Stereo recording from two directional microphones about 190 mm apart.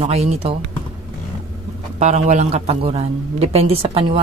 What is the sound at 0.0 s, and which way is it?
Speech, 35° right (ahead or behind).